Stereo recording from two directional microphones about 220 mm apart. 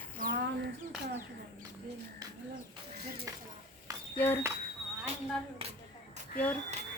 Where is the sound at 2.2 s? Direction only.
15° right (ahead or behind).